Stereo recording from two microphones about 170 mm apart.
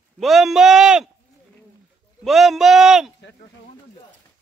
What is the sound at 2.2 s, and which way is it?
Speech, centre (ahead or behind).